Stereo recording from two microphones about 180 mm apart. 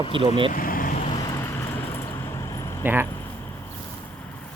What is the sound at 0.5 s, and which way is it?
Vehicle, 50° left (ahead or behind).